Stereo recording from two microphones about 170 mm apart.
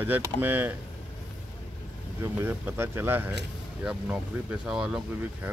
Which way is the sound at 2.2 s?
15° right (ahead or behind).